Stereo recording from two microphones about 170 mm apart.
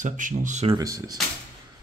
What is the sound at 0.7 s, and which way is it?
Speech, 20° right (ahead or behind).